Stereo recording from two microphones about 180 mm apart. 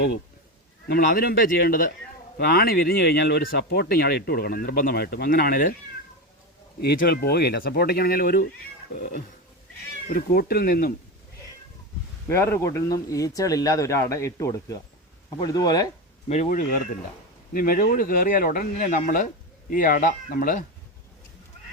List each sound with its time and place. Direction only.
0.9 s speech: 55° left (ahead or behind)
6.8 s speech: 60° left (ahead or behind)
10.1 s speech: 55° left (ahead or behind)
12.3 s speech: 15° left (ahead or behind)
16.3 s speech: 45° left (ahead or behind)